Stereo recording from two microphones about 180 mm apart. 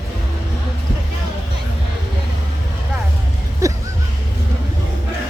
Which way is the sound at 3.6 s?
20° right (ahead or behind).